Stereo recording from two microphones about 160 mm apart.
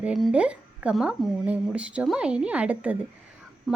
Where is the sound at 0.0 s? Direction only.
5° right (ahead or behind).